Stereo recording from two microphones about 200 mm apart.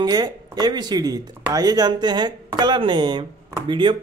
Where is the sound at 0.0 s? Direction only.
20° right (ahead or behind).